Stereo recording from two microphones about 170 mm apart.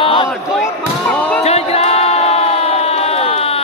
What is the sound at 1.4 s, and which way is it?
Music, 40° left (ahead or behind).